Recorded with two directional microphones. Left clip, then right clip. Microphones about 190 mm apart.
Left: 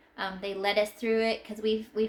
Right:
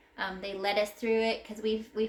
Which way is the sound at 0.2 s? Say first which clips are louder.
Left 2 dB; 25° left (ahead or behind).